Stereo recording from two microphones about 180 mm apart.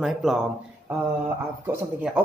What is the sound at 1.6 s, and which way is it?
Speech, 10° right (ahead or behind).